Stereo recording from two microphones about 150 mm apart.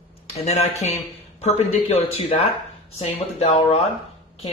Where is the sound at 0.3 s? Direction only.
45° left (ahead or behind).